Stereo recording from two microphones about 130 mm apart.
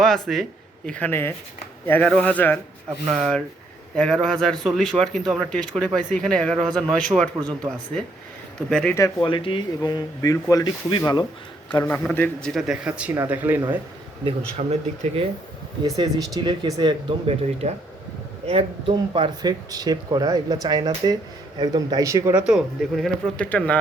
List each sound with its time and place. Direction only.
0.0 s a man's voice: centre (ahead or behind)
3.1 s speech: centre (ahead or behind)
8.7 s a man's voice: 5° left (ahead or behind)
9.2 s speech: 40° left (ahead or behind)
11.7 s a man's voice: 15° left (ahead or behind)
12.5 s speech: 5° right (ahead or behind)
14.7 s speech: 50° right (ahead or behind)
15.8 s speech: 30° right (ahead or behind)
22.3 s speech: 5° right (ahead or behind); by 23.7 s 10° left (ahead or behind)